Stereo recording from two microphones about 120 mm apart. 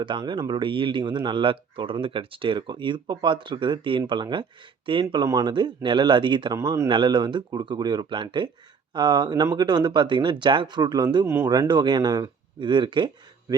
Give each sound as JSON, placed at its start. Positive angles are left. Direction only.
{"t": 0.0, "sound": "speech", "side_deg": -40}
{"t": 6.6, "sound": "speech", "side_deg": -25}
{"t": 6.8, "sound": "speech", "side_deg": -45}